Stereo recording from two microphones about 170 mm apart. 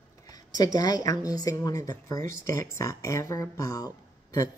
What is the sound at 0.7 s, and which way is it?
Speech, 20° left (ahead or behind).